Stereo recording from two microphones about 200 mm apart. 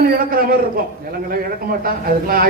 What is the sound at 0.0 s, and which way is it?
Speech, 45° right (ahead or behind).